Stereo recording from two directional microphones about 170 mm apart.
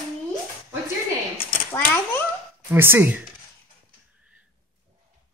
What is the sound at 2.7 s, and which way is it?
Speech, 15° right (ahead or behind).